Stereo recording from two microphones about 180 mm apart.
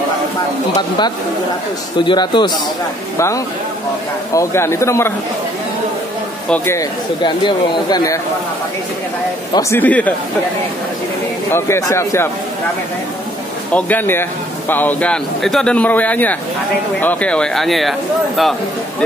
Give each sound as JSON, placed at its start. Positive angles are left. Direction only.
{"t": 2.0, "sound": "speech", "side_deg": 25}
{"t": 4.3, "sound": "a man's voice", "side_deg": 15}
{"t": 6.5, "sound": "speech", "side_deg": 15}
{"t": 9.5, "sound": "a man's voice", "side_deg": 15}
{"t": 11.5, "sound": "a man's voice", "side_deg": 15}
{"t": 13.7, "sound": "a man's voice", "side_deg": 10}